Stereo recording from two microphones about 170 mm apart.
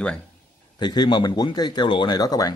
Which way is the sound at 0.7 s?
25° left (ahead or behind).